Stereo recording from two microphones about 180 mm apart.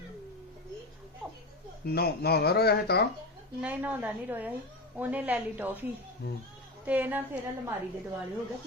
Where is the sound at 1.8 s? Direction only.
60° left (ahead or behind).